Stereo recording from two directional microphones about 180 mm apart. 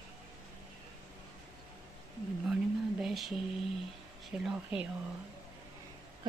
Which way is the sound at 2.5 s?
Centre (ahead or behind).